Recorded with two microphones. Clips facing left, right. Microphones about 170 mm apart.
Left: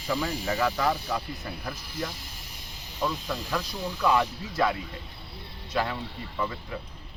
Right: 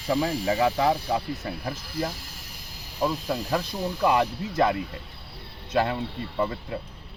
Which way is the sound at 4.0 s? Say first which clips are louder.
Right 2 dB; 20° right (ahead or behind).